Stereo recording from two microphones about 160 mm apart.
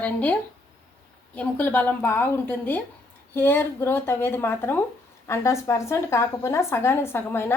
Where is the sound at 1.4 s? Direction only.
10° left (ahead or behind).